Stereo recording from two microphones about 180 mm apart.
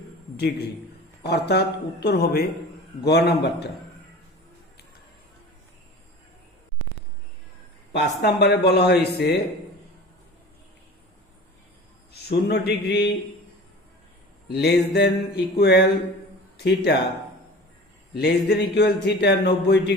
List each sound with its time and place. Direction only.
1.2 s a man's voice: 65° left (ahead or behind)
7.9 s a man's voice: 65° left (ahead or behind)
12.1 s a man's voice: 65° left (ahead or behind)
14.5 s a man's voice: 65° left (ahead or behind)
18.1 s a man's voice: 65° left (ahead or behind)